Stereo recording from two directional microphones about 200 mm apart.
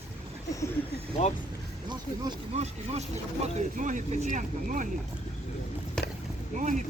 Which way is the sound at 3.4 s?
40° right (ahead or behind).